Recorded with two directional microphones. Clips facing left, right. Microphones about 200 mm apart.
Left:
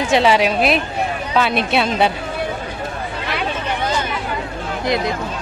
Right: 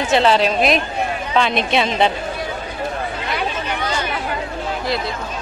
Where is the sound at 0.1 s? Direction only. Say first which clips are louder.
Even; 10° left (ahead or behind).